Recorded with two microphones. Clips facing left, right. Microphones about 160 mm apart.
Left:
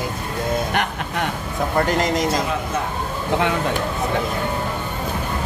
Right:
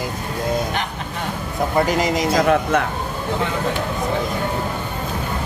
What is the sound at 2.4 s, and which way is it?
Speech, 60° right (ahead or behind).